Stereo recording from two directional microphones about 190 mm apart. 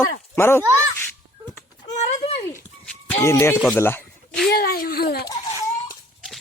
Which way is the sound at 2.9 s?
10° left (ahead or behind).